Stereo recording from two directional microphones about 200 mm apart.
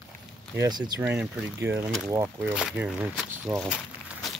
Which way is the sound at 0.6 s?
20° right (ahead or behind).